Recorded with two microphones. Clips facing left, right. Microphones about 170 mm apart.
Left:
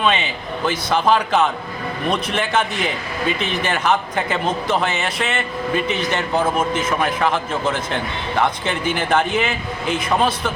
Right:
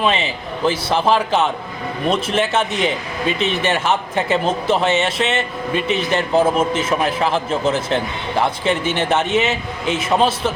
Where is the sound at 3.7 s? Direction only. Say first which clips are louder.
Right 1 dB; 30° right (ahead or behind).